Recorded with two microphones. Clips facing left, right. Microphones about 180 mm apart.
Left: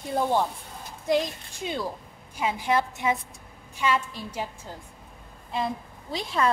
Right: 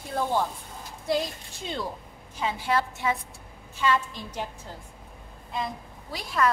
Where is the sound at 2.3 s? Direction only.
15° left (ahead or behind).